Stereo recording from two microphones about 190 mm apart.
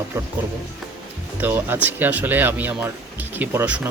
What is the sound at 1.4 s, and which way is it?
Speech, 10° right (ahead or behind).